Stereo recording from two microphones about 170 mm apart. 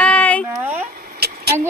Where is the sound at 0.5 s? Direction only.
10° right (ahead or behind).